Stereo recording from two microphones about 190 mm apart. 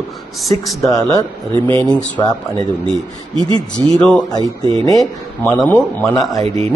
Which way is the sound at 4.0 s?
5° left (ahead or behind).